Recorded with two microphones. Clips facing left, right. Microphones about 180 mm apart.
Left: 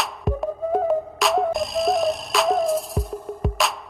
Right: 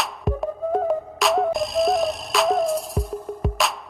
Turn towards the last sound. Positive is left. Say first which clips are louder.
# even
turn(degrees=0)  # may be behind; listen again after turning